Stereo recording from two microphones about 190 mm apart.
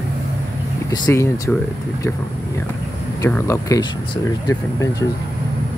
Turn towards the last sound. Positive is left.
turn(degrees=15)  # may be behind; listen again after turning